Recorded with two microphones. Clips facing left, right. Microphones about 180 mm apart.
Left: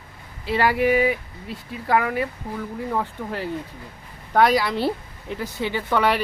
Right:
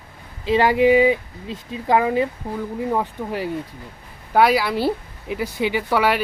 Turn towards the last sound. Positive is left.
turn(degrees=-5)  # may be behind; listen again after turning